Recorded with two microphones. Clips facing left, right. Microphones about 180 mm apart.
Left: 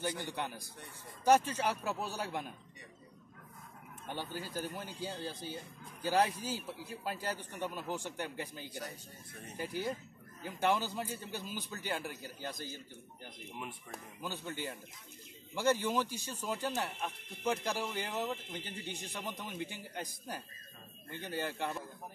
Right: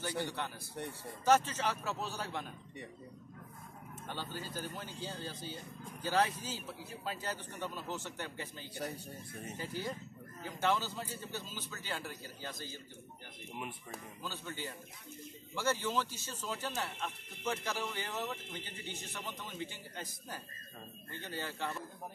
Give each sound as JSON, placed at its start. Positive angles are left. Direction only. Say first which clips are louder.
{"t": 0.2, "sound": "speech", "louder": "right 1 dB", "side_deg": 15}
{"t": 4.1, "sound": "speech", "louder": "left 2 dB", "side_deg": 10}
{"t": 8.7, "sound": "speech", "louder": "right 5 dB", "side_deg": -60}
{"t": 9.6, "sound": "speech", "louder": "left 4 dB", "side_deg": 15}
{"t": 14.2, "sound": "speech", "louder": "left 4 dB", "side_deg": 15}